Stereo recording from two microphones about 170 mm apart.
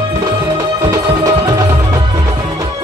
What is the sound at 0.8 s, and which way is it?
Music, 20° right (ahead or behind).